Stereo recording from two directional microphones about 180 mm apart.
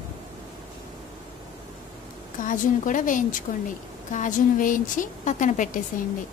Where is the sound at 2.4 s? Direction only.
45° left (ahead or behind).